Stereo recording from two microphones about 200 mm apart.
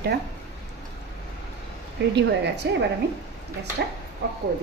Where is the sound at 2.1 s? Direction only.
60° right (ahead or behind).